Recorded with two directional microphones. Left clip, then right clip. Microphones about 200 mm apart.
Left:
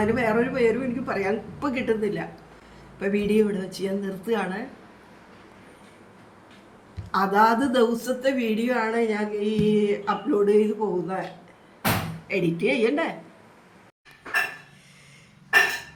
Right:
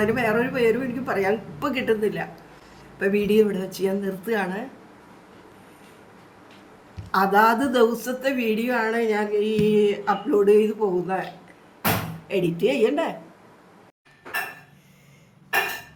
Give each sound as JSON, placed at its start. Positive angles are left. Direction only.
{"t": 0.0, "sound": "a woman's voice", "side_deg": -10}
{"t": 7.1, "sound": "a woman's voice", "side_deg": -15}
{"t": 12.3, "sound": "a woman's voice", "side_deg": -15}